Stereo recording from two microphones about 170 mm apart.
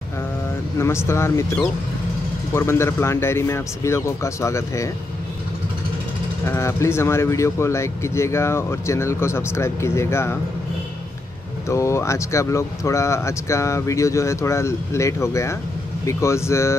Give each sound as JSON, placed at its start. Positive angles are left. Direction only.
{"t": 0.7, "sound": "speech", "side_deg": 15}
{"t": 6.4, "sound": "speech", "side_deg": 15}
{"t": 11.7, "sound": "speech", "side_deg": 15}